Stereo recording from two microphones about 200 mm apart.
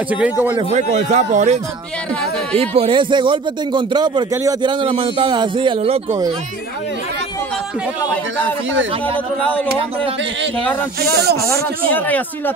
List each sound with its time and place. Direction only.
0.1 s speech: 10° right (ahead or behind)
0.7 s speech: 35° right (ahead or behind)
2.7 s speech: 30° right (ahead or behind)
9.4 s speech: 5° left (ahead or behind)
11.0 s speech: 50° right (ahead or behind)
11.9 s speech: 10° left (ahead or behind)